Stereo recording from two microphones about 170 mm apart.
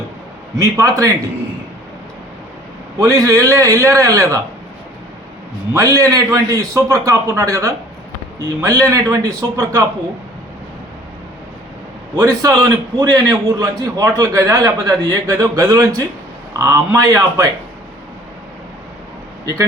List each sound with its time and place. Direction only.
0.6 s a man's voice: 20° right (ahead or behind)
3.0 s a man's voice: 15° right (ahead or behind)
5.7 s a man's voice: 20° right (ahead or behind)
12.1 s a man's voice: 15° right (ahead or behind)